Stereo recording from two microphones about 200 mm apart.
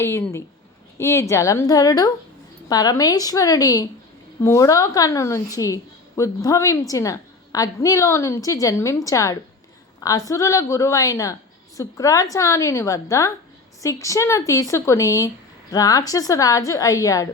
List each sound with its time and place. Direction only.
0.0 s a woman's voice: 15° left (ahead or behind)